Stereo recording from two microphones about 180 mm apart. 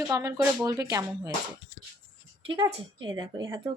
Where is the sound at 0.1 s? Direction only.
20° right (ahead or behind).